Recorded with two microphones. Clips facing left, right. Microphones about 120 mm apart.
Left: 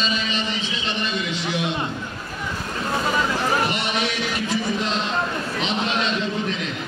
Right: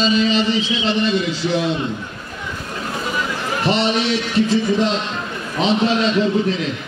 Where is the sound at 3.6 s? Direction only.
30° right (ahead or behind).